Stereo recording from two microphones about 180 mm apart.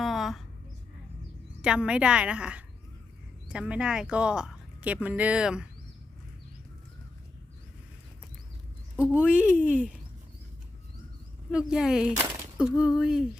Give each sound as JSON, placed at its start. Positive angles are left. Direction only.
{"t": 0.0, "sound": "a sound", "side_deg": 0}
{"t": 1.6, "sound": "speech", "side_deg": -5}
{"t": 9.0, "sound": "speech", "side_deg": -5}
{"t": 11.5, "sound": "speech", "side_deg": -5}
{"t": 12.1, "sound": "a sound", "side_deg": -20}
{"t": 12.8, "sound": "speech", "side_deg": -5}